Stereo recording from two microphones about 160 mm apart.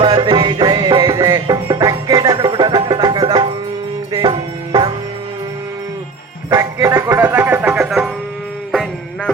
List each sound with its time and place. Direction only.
0.0 s music: 30° right (ahead or behind)
6.5 s music: 20° right (ahead or behind)
8.7 s music: centre (ahead or behind)